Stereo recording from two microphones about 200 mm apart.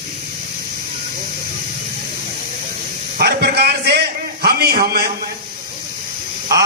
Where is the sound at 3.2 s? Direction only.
55° right (ahead or behind).